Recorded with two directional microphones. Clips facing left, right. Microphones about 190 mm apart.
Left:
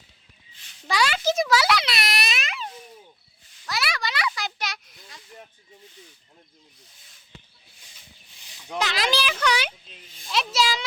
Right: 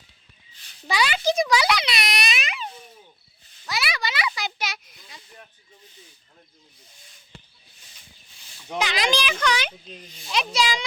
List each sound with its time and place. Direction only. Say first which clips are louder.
0.9 s a child's voice: even; centre (ahead or behind)
3.7 s a sound: even; centre (ahead or behind)
8.7 s a child's voice: right 1 dB; centre (ahead or behind)